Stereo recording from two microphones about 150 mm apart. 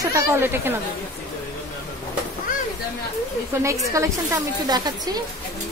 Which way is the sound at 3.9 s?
20° right (ahead or behind).